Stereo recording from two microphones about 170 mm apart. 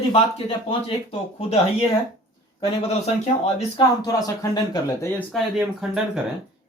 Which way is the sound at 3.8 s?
20° left (ahead or behind).